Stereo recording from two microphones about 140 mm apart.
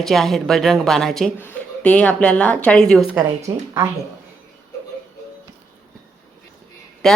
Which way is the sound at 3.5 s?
25° right (ahead or behind).